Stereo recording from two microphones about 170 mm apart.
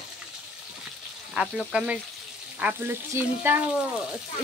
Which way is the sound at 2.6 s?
10° right (ahead or behind).